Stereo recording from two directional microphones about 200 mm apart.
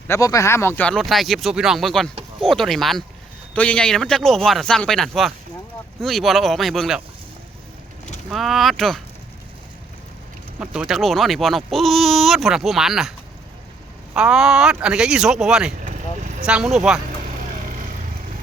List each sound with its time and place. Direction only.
0.1 s speech: 15° left (ahead or behind); by 7.0 s centre (ahead or behind)
8.3 s speech: centre (ahead or behind)
10.6 s speech: 5° right (ahead or behind)
15.8 s vehicle: 40° right (ahead or behind)
16.5 s speech: centre (ahead or behind)
17.2 s vehicle: 40° right (ahead or behind)